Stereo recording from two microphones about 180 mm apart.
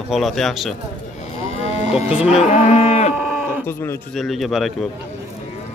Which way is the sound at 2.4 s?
40° left (ahead or behind).